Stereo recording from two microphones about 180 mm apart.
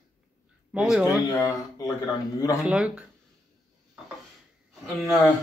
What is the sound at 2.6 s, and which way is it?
Speech, 5° right (ahead or behind).